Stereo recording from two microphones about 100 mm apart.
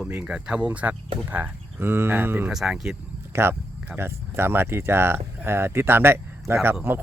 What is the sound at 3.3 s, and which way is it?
Speech, 25° right (ahead or behind).